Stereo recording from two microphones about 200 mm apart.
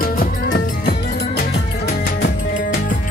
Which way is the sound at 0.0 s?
45° left (ahead or behind).